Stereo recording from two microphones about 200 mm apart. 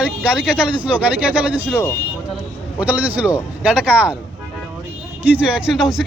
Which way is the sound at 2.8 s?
10° right (ahead or behind).